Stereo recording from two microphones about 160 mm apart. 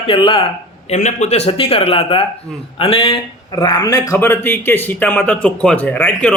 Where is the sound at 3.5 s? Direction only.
25° left (ahead or behind).